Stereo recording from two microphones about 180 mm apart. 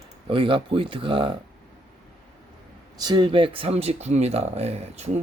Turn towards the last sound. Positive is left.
turn(degrees=-35)  # may be behind; listen again after turning